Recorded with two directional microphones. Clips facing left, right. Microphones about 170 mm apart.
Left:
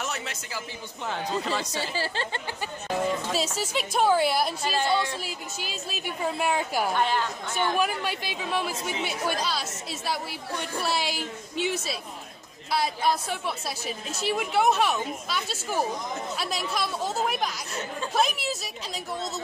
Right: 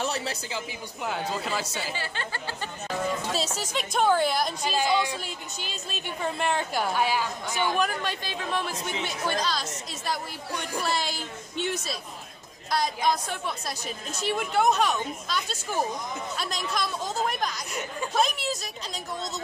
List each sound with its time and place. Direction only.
0.0 s a man's voice: 35° right (ahead or behind)
1.0 s a woman's voice: 5° right (ahead or behind)
2.0 s speech: 30° left (ahead or behind)
3.3 s a woman's voice: 10° left (ahead or behind)
6.9 s a woman's voice: 5° right (ahead or behind)
7.7 s a woman's voice: 10° left (ahead or behind)